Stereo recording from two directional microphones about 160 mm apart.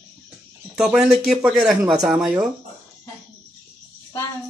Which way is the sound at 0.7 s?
Centre (ahead or behind).